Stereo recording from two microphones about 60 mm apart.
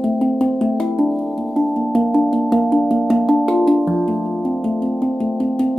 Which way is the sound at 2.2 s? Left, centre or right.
Centre.